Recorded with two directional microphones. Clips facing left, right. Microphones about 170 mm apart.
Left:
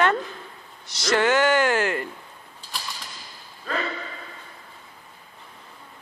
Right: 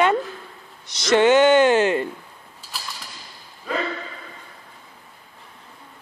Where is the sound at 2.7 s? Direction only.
5° right (ahead or behind).